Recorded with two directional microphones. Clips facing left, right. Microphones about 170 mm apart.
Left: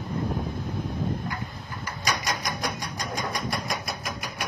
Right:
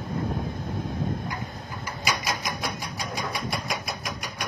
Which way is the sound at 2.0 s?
5° right (ahead or behind).